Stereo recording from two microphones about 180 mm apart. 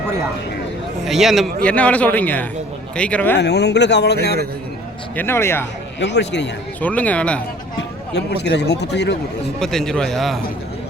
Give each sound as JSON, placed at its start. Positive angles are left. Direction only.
{"t": 1.0, "sound": "a man's voice", "side_deg": 0}
{"t": 3.3, "sound": "speech", "side_deg": 70}
{"t": 5.1, "sound": "a man's voice", "side_deg": 15}
{"t": 6.0, "sound": "speech", "side_deg": 80}
{"t": 6.8, "sound": "a man's voice", "side_deg": 10}
{"t": 7.8, "sound": "speech", "side_deg": 70}
{"t": 9.6, "sound": "a man's voice", "side_deg": 5}